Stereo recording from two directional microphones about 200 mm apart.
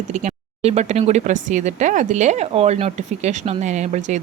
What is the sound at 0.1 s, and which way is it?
Speech, 35° right (ahead or behind).